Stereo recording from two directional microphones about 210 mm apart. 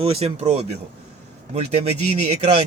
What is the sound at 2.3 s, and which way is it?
Speech, 30° right (ahead or behind).